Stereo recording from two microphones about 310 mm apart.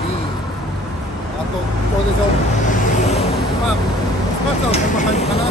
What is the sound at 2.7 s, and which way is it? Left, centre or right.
Vehicle, centre.